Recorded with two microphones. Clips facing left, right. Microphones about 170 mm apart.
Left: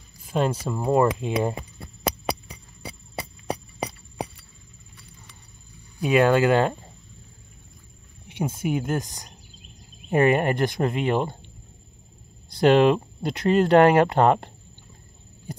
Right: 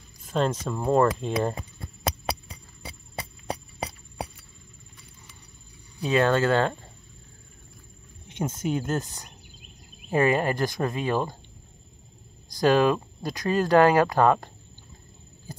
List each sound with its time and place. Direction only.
0.3 s speech: 10° left (ahead or behind)
5.9 s speech: 15° left (ahead or behind)
8.3 s speech: 10° left (ahead or behind)
12.5 s speech: 20° left (ahead or behind)